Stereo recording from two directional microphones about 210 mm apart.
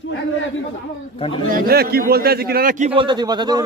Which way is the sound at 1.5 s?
45° right (ahead or behind).